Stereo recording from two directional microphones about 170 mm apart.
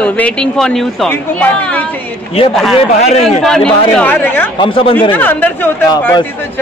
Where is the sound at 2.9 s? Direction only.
40° left (ahead or behind).